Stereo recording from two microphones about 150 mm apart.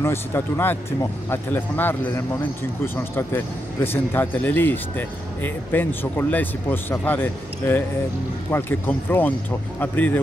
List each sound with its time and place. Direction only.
0.0 s speech: 15° left (ahead or behind)